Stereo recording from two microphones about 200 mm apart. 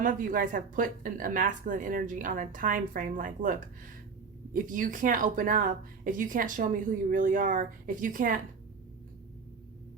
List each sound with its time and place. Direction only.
0.0 s speech: 40° right (ahead or behind)